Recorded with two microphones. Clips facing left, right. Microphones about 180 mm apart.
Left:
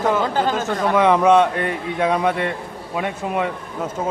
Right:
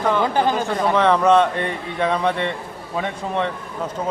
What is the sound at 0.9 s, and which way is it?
A man's voice, 10° left (ahead or behind).